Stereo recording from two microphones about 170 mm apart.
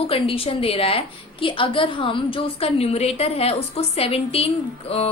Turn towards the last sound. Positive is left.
turn(degrees=35)  # may be behind; listen again after turning